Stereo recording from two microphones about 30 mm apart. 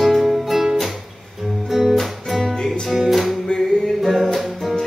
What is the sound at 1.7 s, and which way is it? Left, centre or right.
Music, centre.